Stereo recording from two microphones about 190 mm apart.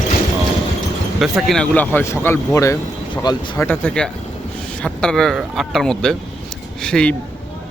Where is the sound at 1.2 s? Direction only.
Centre (ahead or behind); by 3.6 s 25° left (ahead or behind).